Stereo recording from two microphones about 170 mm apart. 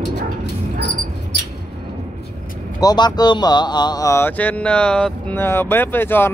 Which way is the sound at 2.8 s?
25° left (ahead or behind).